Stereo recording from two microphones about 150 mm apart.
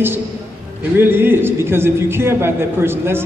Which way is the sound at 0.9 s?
15° right (ahead or behind).